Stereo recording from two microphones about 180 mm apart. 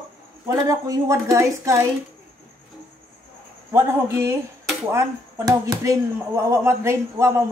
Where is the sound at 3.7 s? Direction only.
15° right (ahead or behind).